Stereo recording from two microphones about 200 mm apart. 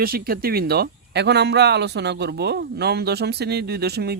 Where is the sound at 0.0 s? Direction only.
45° right (ahead or behind).